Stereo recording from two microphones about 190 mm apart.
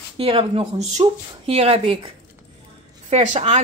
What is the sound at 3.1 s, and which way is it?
Speech, 35° right (ahead or behind).